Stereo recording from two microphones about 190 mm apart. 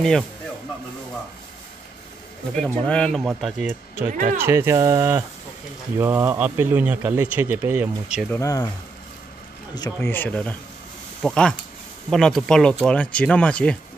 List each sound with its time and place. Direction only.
2.5 s speech: 5° left (ahead or behind)
4.4 s speech: 15° right (ahead or behind)
8.3 s speech: 15° left (ahead or behind)
9.8 s speech: 15° left (ahead or behind)